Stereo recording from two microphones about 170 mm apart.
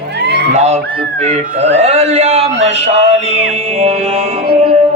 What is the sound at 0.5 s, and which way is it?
Speech, 40° right (ahead or behind).